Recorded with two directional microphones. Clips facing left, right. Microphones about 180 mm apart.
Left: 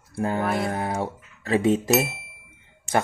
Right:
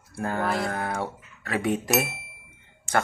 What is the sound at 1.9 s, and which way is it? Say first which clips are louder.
Speech: left 3 dB; centre (ahead or behind).